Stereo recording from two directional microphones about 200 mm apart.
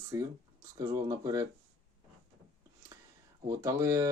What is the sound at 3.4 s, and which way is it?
Speech, 15° right (ahead or behind).